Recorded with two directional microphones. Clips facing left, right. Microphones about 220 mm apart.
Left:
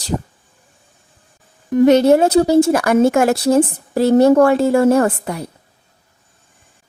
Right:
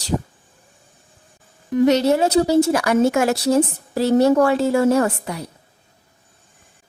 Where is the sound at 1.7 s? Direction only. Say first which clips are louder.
Left 5 dB; 50° left (ahead or behind).